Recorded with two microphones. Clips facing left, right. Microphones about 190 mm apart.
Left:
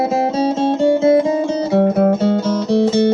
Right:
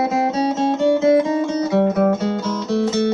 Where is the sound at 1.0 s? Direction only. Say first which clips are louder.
Left 2 dB; 30° left (ahead or behind).